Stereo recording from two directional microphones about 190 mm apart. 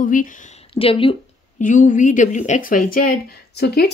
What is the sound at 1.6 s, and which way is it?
Speech, 45° left (ahead or behind).